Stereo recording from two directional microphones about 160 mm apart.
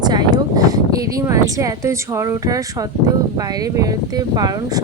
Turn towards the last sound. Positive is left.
turn(degrees=-25)  # may be behind; listen again after turning